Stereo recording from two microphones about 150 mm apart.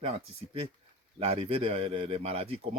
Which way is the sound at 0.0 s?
40° right (ahead or behind).